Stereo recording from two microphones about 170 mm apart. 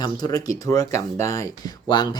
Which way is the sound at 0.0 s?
20° left (ahead or behind).